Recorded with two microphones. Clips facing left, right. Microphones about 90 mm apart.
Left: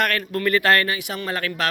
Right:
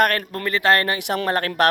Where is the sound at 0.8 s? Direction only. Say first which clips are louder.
Right 4 dB; 60° right (ahead or behind).